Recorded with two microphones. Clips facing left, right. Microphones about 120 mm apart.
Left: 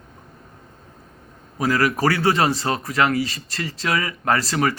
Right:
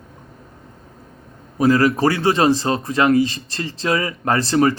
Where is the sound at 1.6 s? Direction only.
25° right (ahead or behind).